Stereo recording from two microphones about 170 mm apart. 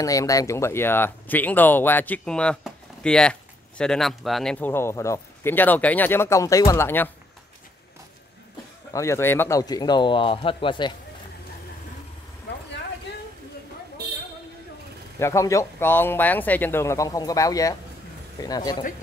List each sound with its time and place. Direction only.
0.0 s speech: 20° left (ahead or behind)
8.9 s speech: 15° left (ahead or behind)
15.1 s speech: 15° left (ahead or behind)